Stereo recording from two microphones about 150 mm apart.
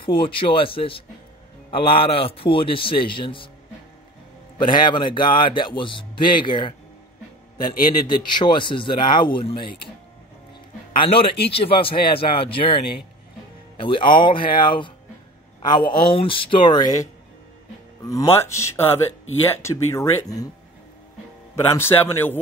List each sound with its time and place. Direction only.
0.0 s a man's voice: 35° left (ahead or behind)
4.6 s a man's voice: 30° left (ahead or behind)
8.1 s a man's voice: 30° left (ahead or behind)
11.0 s a man's voice: 40° left (ahead or behind)
18.3 s a man's voice: 20° left (ahead or behind)
21.6 s a man's voice: 15° left (ahead or behind)